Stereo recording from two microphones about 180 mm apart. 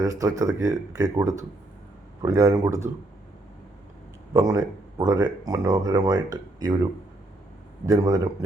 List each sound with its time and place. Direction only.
0.0 s speech: 20° right (ahead or behind)
4.4 s speech: 20° right (ahead or behind)
7.9 s speech: 20° right (ahead or behind)